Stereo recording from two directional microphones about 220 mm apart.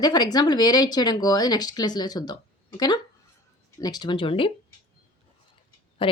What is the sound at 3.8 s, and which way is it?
Speech, 20° left (ahead or behind).